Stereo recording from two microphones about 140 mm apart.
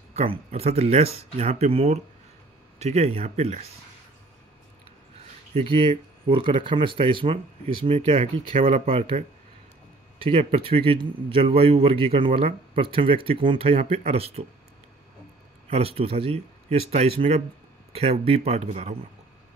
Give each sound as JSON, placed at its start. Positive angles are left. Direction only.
{"t": 0.1, "sound": "speech", "side_deg": -45}
{"t": 5.5, "sound": "speech", "side_deg": -40}
{"t": 10.2, "sound": "speech", "side_deg": -40}
{"t": 15.7, "sound": "speech", "side_deg": -45}